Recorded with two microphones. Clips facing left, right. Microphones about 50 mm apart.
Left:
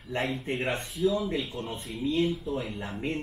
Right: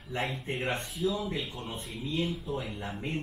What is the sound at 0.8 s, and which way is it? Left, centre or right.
Speech, centre.